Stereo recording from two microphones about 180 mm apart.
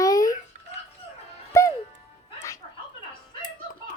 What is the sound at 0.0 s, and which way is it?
Babbling, 20° left (ahead or behind).